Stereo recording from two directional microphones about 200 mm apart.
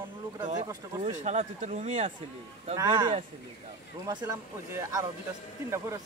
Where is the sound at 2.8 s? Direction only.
20° right (ahead or behind).